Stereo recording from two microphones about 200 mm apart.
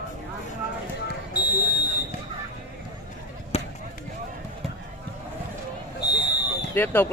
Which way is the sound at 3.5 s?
30° left (ahead or behind).